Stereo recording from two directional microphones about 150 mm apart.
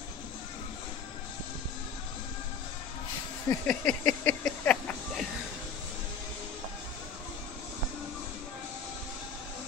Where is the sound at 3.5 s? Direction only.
25° left (ahead or behind).